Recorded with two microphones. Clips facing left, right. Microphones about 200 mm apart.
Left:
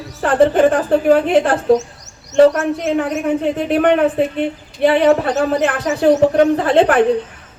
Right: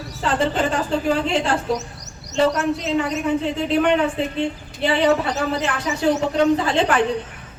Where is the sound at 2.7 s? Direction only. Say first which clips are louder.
Left 4 dB; 55° left (ahead or behind).